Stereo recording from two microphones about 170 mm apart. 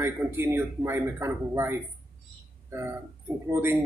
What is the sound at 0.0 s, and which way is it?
A man's voice, 15° right (ahead or behind).